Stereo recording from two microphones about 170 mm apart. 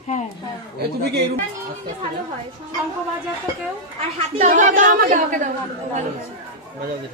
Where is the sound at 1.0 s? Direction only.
70° right (ahead or behind).